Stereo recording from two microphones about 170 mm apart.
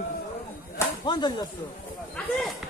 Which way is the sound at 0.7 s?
25° left (ahead or behind).